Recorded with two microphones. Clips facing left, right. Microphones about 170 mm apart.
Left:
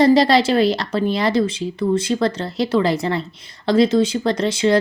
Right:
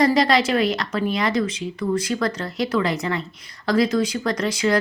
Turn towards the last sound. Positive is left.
turn(degrees=25)  # may be behind; listen again after turning